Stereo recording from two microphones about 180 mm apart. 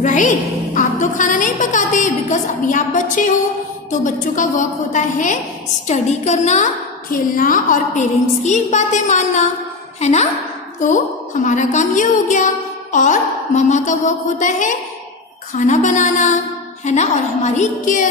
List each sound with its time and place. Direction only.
0.0 s a woman's voice: 45° left (ahead or behind)